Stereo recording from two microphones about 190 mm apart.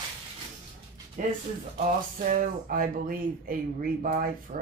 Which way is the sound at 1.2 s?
45° right (ahead or behind).